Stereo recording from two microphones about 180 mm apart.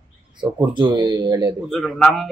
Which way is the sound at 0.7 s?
25° right (ahead or behind).